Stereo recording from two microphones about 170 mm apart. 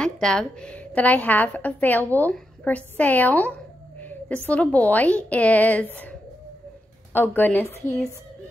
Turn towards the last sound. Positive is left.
turn(degrees=15)  # may be behind; listen again after turning